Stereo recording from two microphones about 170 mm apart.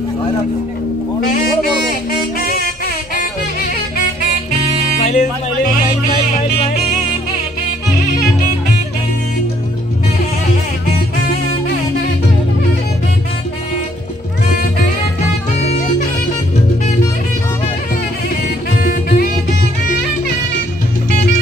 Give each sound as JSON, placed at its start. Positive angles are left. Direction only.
{"t": 1.9, "sound": "music", "side_deg": 60}
{"t": 5.0, "sound": "speech", "side_deg": 45}
{"t": 18.8, "sound": "music", "side_deg": 60}